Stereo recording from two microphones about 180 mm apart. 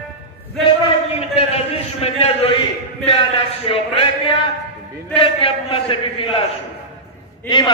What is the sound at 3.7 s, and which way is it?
A man's voice, 30° left (ahead or behind).